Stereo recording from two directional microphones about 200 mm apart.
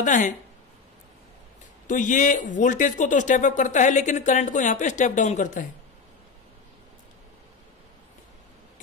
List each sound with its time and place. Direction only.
0.0 s speech: 40° left (ahead or behind)
1.9 s speech: 40° left (ahead or behind)